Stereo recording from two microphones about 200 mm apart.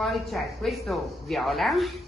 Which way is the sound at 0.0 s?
Centre (ahead or behind).